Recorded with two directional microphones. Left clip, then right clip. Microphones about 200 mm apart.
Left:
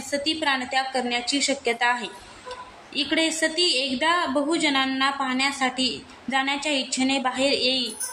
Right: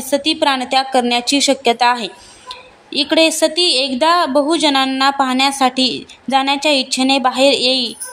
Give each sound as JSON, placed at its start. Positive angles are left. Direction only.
{"t": 0.1, "sound": "a woman's voice", "side_deg": -40}